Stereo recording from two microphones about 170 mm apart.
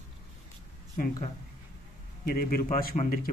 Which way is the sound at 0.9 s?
55° left (ahead or behind).